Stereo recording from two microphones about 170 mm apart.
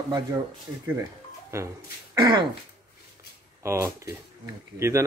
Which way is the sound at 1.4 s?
15° right (ahead or behind).